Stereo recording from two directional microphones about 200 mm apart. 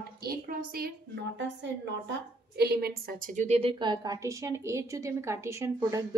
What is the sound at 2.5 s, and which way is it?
A woman's voice, 50° right (ahead or behind).